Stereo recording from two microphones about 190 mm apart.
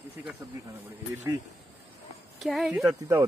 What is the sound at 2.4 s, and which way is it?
Speech, centre (ahead or behind).